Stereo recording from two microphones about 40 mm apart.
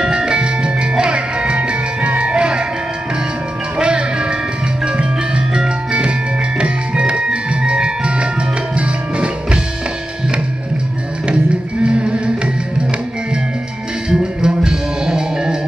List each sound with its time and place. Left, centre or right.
0.0 s music: right
3.7 s music: right
11.8 s music: right
14.0 s music: right